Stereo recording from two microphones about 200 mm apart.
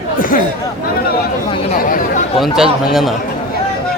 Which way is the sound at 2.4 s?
Centre (ahead or behind).